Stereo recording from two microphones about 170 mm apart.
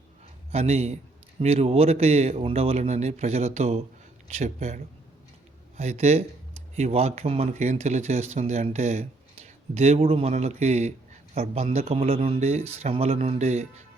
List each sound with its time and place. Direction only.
0.5 s speech: 40° right (ahead or behind)